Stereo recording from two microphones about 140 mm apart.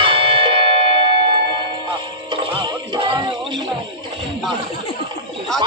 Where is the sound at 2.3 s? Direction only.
35° right (ahead or behind).